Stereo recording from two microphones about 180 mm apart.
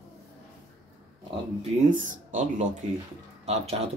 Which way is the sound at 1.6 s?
45° right (ahead or behind).